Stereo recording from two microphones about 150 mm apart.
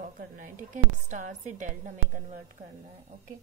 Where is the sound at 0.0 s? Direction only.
60° right (ahead or behind).